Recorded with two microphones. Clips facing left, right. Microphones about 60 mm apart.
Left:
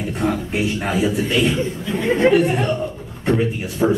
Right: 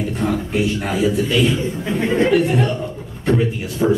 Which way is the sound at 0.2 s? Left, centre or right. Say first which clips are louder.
Even; centre.